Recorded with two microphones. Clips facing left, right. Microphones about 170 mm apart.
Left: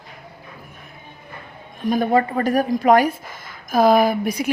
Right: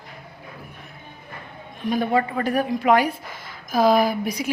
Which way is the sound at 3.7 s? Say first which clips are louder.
Left 3 dB; 55° left (ahead or behind).